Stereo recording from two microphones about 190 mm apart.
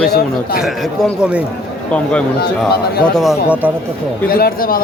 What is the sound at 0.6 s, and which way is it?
A man's voice, centre (ahead or behind).